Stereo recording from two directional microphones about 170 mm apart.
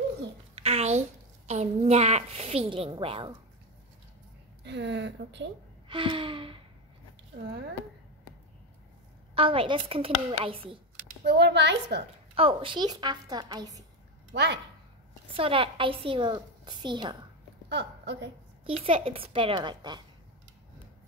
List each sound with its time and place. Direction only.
0.6 s a sound: 35° right (ahead or behind)
1.5 s a woman's voice: 40° right (ahead or behind)
4.6 s speech: 90° right
5.9 s a woman's voice: 30° right (ahead or behind)
9.3 s a woman's voice: 30° right (ahead or behind)
11.2 s a woman's voice: 80° right
12.4 s a woman's voice: 30° right (ahead or behind)
14.3 s speech: 90° right
15.2 s a woman's voice: 30° right (ahead or behind)
17.6 s a woman's voice: 90° right
18.7 s a woman's voice: 35° right (ahead or behind)